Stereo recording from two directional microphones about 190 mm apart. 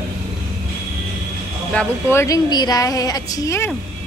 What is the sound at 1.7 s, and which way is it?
Speech, 10° left (ahead or behind).